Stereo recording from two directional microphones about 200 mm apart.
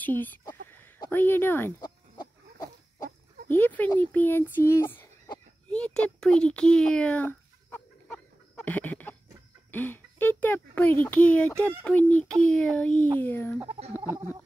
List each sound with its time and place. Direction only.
0.0 s speech: 10° left (ahead or behind)
3.4 s speech: 10° left (ahead or behind)
5.7 s a sound: 5° left (ahead or behind)
9.7 s speech: 10° left (ahead or behind)
13.7 s chicken: 30° right (ahead or behind)